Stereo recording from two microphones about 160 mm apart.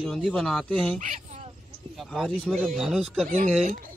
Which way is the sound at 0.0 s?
Centre (ahead or behind).